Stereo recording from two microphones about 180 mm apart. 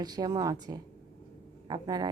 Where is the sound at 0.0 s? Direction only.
20° right (ahead or behind).